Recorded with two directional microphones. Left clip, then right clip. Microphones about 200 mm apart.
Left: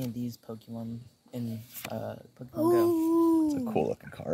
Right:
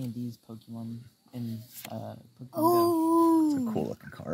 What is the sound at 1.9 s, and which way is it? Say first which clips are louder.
Speech: left 5 dB; 40° left (ahead or behind).